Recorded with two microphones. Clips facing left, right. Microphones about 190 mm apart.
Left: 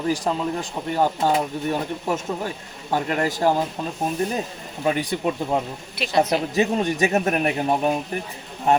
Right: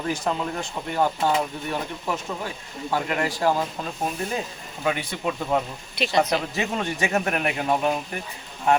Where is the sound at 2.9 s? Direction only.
40° left (ahead or behind).